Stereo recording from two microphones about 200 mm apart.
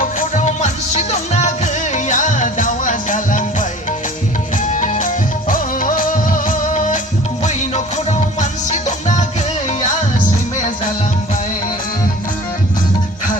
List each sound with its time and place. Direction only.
0.0 s music: 40° left (ahead or behind)